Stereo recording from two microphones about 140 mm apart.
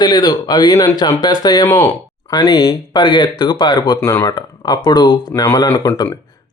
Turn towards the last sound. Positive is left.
turn(degrees=25)  # may be behind; listen again after turning